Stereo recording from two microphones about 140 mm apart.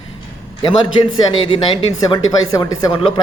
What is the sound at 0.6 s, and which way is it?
Speech, 40° left (ahead or behind).